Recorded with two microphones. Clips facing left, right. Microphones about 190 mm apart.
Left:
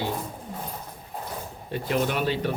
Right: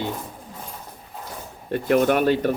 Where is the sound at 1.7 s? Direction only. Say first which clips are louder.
Right 7 dB; 55° right (ahead or behind).